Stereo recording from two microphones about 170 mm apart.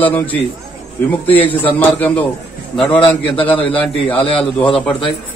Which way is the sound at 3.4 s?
10° left (ahead or behind).